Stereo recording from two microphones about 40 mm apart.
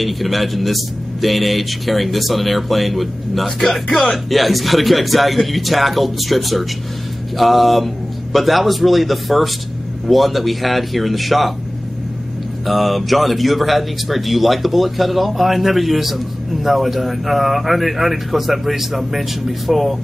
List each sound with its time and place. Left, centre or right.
0.0 s speech: centre
12.6 s speech: centre